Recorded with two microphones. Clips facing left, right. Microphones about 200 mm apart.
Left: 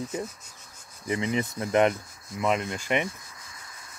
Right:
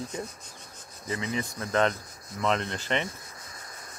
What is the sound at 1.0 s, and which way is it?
Speech, 20° left (ahead or behind).